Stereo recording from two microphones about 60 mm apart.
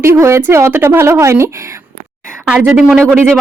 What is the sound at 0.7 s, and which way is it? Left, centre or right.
Speech, right.